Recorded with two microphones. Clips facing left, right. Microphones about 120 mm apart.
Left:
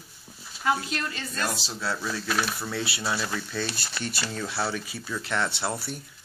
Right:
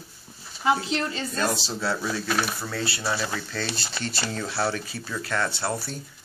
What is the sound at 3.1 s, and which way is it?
Speech, 15° right (ahead or behind).